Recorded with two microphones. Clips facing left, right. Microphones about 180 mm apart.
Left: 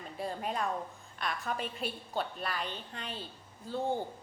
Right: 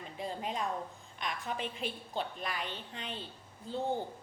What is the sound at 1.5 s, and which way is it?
A woman's voice, 20° right (ahead or behind).